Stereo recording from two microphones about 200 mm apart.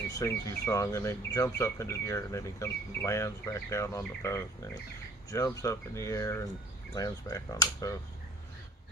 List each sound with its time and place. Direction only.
0.1 s speech: 15° left (ahead or behind)